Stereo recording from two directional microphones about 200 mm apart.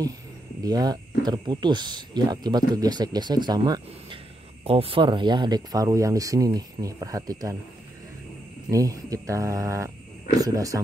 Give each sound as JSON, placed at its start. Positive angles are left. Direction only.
{"t": 0.7, "sound": "speech", "side_deg": -20}
{"t": 8.6, "sound": "speech", "side_deg": -15}